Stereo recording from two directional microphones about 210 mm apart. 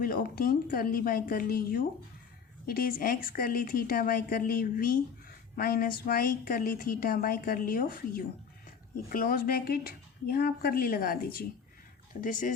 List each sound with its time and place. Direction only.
0.0 s a woman's voice: 45° left (ahead or behind)